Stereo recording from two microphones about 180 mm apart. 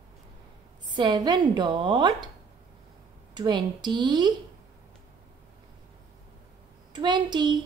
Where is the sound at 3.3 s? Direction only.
25° right (ahead or behind).